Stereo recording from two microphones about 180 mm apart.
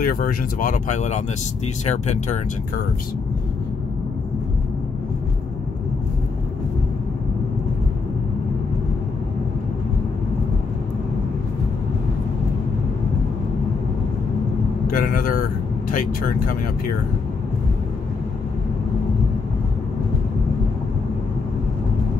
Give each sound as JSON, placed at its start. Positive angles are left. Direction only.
{"t": 0.0, "sound": "speech", "side_deg": 55}
{"t": 15.0, "sound": "vehicle", "side_deg": 50}